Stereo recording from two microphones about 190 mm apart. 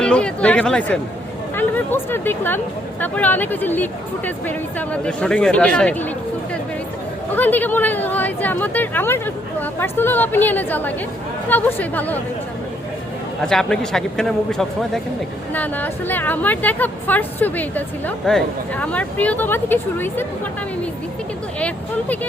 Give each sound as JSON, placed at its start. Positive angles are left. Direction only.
{"t": 0.0, "sound": "a man's voice", "side_deg": 5}
{"t": 7.3, "sound": "a woman's voice", "side_deg": 10}
{"t": 13.4, "sound": "a man's voice", "side_deg": 5}